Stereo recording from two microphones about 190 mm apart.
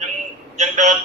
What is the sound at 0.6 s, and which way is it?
Speech, 40° right (ahead or behind).